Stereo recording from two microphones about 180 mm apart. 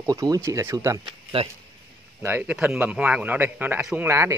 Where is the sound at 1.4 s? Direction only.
35° right (ahead or behind).